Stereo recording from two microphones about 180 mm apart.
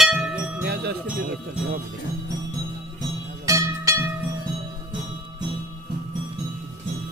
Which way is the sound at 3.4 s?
15° right (ahead or behind).